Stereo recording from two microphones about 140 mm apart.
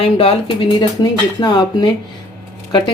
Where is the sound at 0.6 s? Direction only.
30° left (ahead or behind).